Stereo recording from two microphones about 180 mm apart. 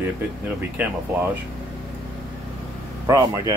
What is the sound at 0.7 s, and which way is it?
Speech, 10° right (ahead or behind).